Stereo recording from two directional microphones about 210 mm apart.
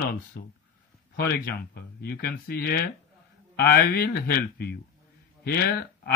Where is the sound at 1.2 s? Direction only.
50° left (ahead or behind).